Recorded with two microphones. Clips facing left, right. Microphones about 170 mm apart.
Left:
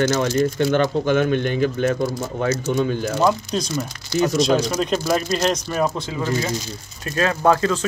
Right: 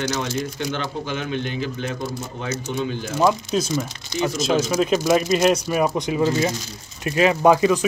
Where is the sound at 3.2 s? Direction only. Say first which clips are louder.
Right 2 dB; centre (ahead or behind).